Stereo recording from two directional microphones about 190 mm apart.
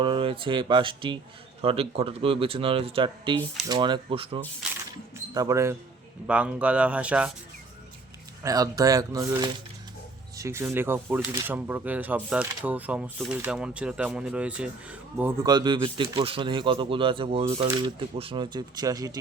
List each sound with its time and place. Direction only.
0.0 s speech: 25° right (ahead or behind)
5.1 s speech: 20° right (ahead or behind)
8.4 s speech: 20° right (ahead or behind)
15.4 s speech: 25° right (ahead or behind)